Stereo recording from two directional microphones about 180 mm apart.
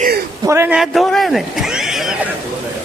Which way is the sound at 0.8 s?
Centre (ahead or behind).